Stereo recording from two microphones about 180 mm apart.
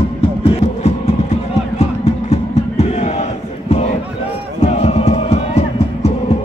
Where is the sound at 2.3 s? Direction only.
35° left (ahead or behind).